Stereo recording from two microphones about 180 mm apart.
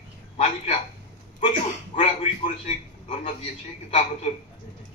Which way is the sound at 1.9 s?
45° left (ahead or behind).